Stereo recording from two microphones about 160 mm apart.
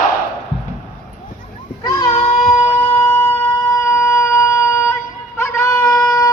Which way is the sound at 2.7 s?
15° left (ahead or behind).